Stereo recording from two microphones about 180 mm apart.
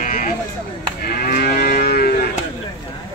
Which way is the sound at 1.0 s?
55° left (ahead or behind).